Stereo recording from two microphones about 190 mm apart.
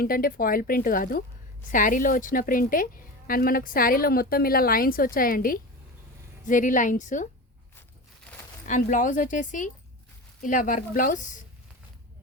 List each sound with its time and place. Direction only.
0.0 s a woman's voice: 50° left (ahead or behind)
8.6 s a woman's voice: 40° left (ahead or behind)